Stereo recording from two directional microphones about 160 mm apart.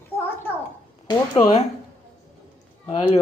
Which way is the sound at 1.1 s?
25° left (ahead or behind).